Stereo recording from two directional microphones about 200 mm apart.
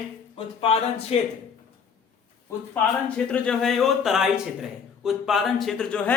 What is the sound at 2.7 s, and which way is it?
A man's voice, 5° left (ahead or behind).